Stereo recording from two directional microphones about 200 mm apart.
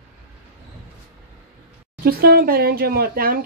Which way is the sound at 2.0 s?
50° right (ahead or behind).